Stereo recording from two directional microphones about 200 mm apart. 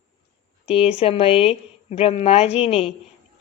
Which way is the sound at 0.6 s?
30° left (ahead or behind).